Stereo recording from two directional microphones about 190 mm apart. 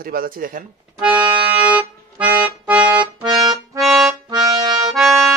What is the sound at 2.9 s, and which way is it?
Accordion, 20° right (ahead or behind).